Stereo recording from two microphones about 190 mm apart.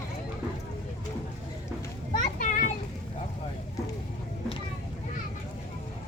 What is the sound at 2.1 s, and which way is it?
Children playing, 45° left (ahead or behind).